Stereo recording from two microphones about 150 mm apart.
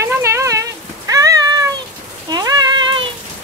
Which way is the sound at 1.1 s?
25° right (ahead or behind).